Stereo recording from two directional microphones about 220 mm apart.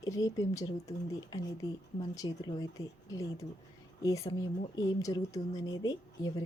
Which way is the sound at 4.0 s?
15° left (ahead or behind).